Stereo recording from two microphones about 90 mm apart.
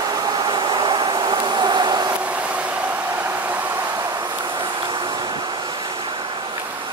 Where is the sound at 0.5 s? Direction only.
55° right (ahead or behind).